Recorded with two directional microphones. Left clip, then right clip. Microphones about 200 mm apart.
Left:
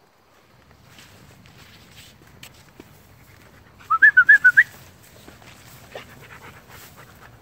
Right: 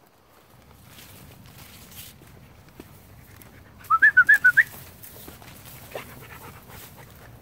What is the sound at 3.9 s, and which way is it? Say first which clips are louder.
Bird: left 3 dB; 5° right (ahead or behind).